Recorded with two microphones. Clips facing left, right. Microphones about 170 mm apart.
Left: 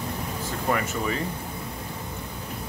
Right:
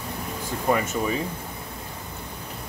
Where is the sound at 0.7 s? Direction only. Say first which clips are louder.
Right 3 dB; 20° right (ahead or behind).